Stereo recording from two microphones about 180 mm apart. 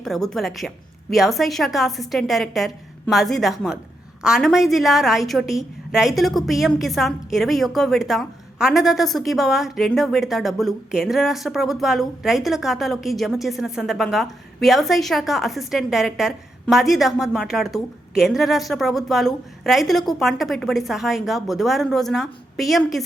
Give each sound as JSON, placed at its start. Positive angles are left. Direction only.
{"t": 0.0, "sound": "a woman's voice", "side_deg": 0}